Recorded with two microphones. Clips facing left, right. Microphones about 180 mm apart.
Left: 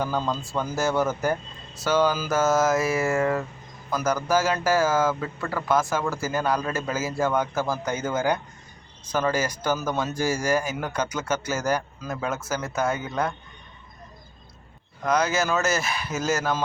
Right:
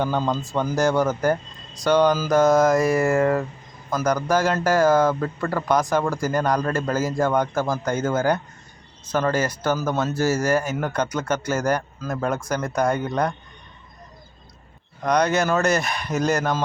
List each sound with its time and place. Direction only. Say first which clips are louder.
0.0 s a man's voice: right 4 dB; 20° right (ahead or behind)
1.0 s speech: right 4 dB; 10° left (ahead or behind)
15.0 s speech: right 3 dB; 5° left (ahead or behind)